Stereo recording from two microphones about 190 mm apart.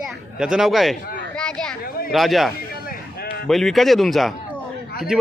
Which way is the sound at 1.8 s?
55° left (ahead or behind).